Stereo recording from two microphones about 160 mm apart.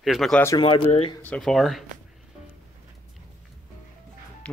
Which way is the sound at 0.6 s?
35° left (ahead or behind).